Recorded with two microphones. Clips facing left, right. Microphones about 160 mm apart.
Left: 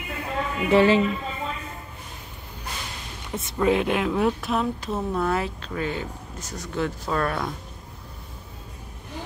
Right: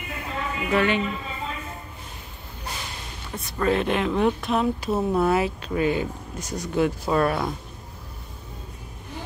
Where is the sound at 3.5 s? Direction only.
10° left (ahead or behind); by 7.5 s 10° right (ahead or behind).